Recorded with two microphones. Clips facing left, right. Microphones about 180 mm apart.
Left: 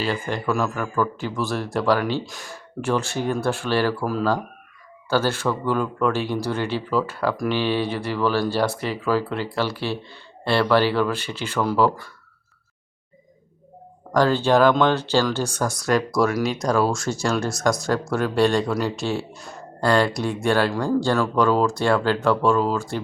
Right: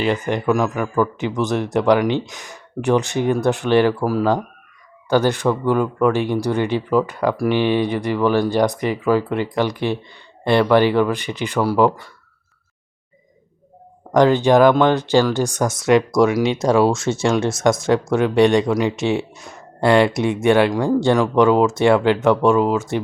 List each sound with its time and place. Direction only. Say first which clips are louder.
0.0 s speech: right 5 dB; 20° right (ahead or behind)
14.1 s speech: right 5 dB; 20° right (ahead or behind)